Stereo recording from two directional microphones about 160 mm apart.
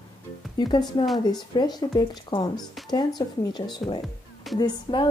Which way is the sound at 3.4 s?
25° left (ahead or behind).